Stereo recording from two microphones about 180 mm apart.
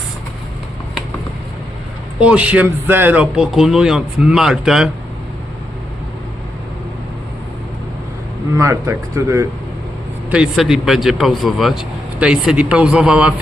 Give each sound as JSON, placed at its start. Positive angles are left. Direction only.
{"t": 2.2, "sound": "speech", "side_deg": -5}
{"t": 8.5, "sound": "speech", "side_deg": -15}
{"t": 10.3, "sound": "speech", "side_deg": 0}